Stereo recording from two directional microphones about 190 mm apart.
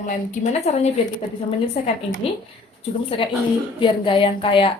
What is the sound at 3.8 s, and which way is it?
Speech, 25° left (ahead or behind).